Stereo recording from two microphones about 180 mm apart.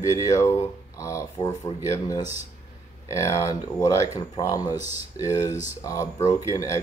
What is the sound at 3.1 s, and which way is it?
Speech, 15° left (ahead or behind).